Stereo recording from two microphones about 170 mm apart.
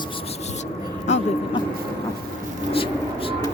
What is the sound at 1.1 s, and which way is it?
Vehicle, 45° left (ahead or behind).